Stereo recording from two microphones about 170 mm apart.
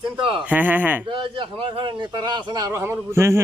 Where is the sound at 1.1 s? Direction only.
30° right (ahead or behind).